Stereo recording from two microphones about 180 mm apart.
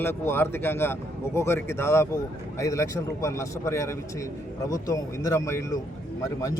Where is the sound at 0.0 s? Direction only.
10° left (ahead or behind).